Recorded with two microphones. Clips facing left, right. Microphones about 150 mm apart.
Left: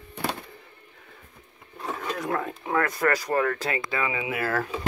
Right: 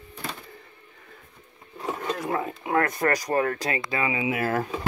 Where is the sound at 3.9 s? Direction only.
20° right (ahead or behind).